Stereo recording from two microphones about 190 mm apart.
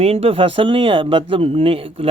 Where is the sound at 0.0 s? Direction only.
30° right (ahead or behind).